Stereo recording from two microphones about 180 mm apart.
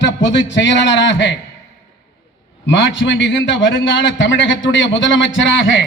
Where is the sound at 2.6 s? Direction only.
90° left.